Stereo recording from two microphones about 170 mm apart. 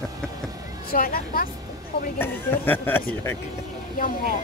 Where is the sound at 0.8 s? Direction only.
60° left (ahead or behind).